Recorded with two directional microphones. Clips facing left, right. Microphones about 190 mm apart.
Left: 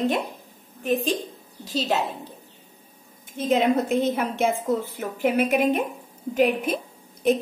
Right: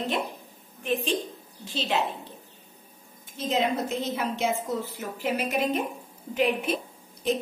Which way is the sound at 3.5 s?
55° left (ahead or behind).